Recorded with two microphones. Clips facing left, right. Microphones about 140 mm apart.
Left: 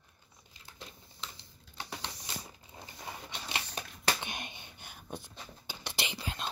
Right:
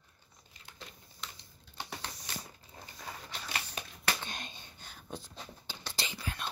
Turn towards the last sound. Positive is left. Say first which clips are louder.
# left 1 dB
turn(degrees=20)  # may be behind; listen again after turning